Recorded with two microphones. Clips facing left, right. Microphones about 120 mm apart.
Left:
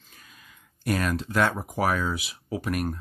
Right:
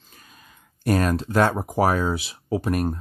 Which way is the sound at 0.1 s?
35° right (ahead or behind).